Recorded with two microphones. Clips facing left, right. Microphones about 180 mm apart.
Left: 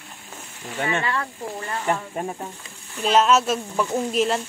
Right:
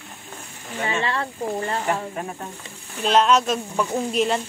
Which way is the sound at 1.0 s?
30° right (ahead or behind).